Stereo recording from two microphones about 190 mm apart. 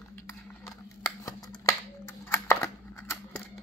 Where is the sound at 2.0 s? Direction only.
15° left (ahead or behind).